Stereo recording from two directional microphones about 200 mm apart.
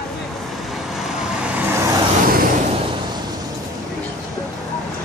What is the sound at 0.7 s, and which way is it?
Vehicle, centre (ahead or behind).